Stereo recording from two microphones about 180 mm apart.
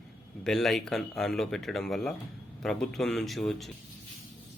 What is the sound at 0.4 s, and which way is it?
Speech, centre (ahead or behind).